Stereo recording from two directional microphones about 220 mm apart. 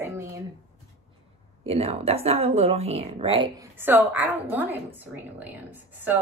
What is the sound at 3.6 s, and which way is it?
A woman's voice, 10° right (ahead or behind).